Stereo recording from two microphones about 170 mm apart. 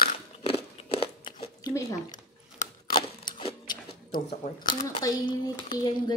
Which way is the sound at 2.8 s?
25° left (ahead or behind).